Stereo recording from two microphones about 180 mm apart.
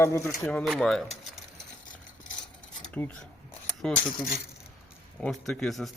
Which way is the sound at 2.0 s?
45° left (ahead or behind).